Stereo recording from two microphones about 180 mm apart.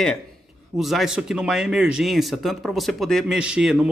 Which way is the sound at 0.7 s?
Centre (ahead or behind).